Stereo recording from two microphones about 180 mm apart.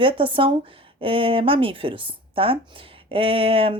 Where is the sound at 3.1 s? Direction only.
30° right (ahead or behind).